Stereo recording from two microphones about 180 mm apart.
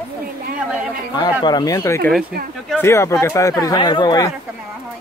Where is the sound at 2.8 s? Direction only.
15° left (ahead or behind).